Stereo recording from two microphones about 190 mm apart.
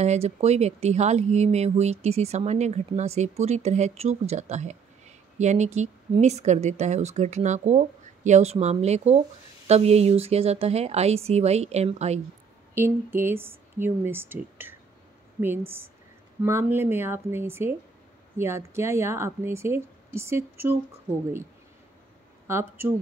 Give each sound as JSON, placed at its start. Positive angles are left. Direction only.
{"t": 0.0, "sound": "speech", "side_deg": -35}
{"t": 12.7, "sound": "a woman's voice", "side_deg": -10}
{"t": 22.5, "sound": "a woman's voice", "side_deg": -10}